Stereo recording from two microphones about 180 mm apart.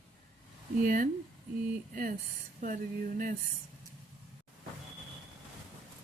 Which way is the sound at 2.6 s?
50° right (ahead or behind).